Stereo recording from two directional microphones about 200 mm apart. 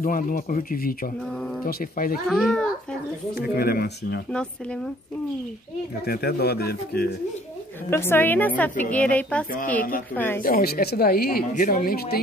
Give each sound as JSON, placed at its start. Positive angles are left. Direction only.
{"t": 0.0, "sound": "speech", "side_deg": 45}
{"t": 2.2, "sound": "a child's voice", "side_deg": 0}
{"t": 3.3, "sound": "speech", "side_deg": 50}
{"t": 4.3, "sound": "a child's voice", "side_deg": 5}
{"t": 6.0, "sound": "speech", "side_deg": 50}
{"t": 7.9, "sound": "a woman's voice", "side_deg": 10}
{"t": 10.4, "sound": "speech", "side_deg": 50}